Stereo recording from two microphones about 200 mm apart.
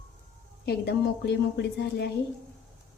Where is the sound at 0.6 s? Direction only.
55° left (ahead or behind).